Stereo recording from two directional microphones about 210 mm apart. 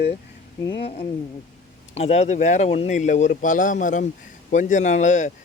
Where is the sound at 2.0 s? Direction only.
30° left (ahead or behind).